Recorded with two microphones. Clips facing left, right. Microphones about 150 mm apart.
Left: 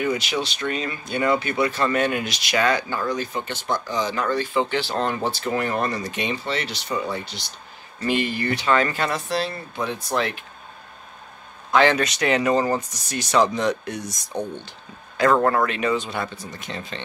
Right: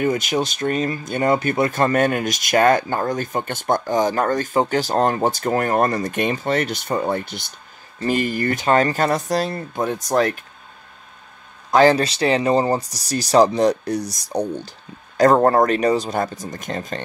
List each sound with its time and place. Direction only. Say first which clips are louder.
0.0 s speech: right 4 dB; 45° right (ahead or behind)
11.7 s speech: right 4 dB; 35° right (ahead or behind)